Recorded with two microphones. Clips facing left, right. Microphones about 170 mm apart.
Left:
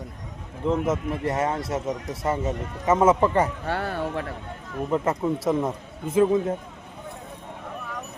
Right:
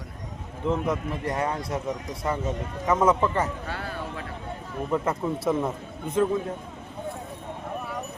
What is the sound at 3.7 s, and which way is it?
Speech, 55° left (ahead or behind).